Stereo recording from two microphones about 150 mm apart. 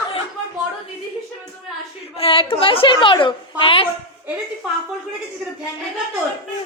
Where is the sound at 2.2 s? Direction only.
40° left (ahead or behind).